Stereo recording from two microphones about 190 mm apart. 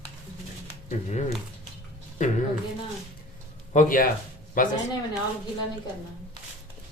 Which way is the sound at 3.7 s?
45° left (ahead or behind).